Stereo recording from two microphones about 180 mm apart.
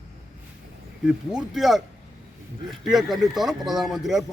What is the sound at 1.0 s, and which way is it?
Speech, 5° right (ahead or behind).